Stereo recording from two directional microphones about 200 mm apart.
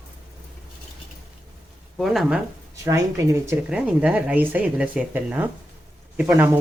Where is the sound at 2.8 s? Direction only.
15° right (ahead or behind).